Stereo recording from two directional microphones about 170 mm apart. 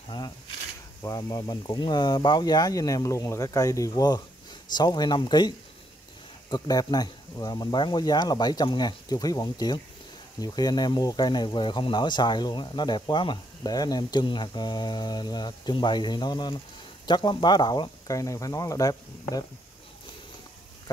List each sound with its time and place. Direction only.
1.0 s speech: 20° left (ahead or behind)
6.5 s speech: 20° left (ahead or behind)